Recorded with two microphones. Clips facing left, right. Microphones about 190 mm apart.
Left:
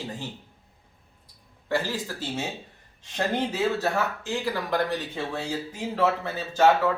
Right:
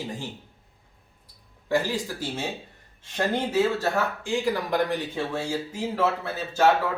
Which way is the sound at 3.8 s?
15° right (ahead or behind).